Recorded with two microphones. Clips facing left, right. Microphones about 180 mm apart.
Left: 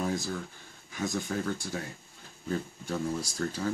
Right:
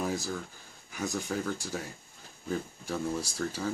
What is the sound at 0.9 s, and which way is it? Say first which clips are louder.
Speech: left 1 dB; 5° right (ahead or behind).